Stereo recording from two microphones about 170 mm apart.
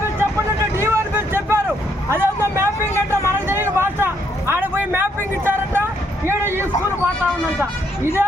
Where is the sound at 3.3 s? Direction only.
15° right (ahead or behind).